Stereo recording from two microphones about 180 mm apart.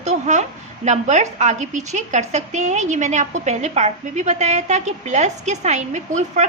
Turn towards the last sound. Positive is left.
turn(degrees=-40)  # may be behind; listen again after turning